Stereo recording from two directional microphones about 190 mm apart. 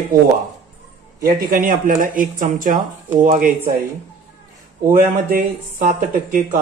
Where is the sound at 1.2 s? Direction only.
45° right (ahead or behind).